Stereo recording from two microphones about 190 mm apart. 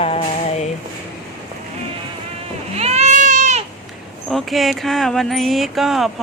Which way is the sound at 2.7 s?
35° right (ahead or behind).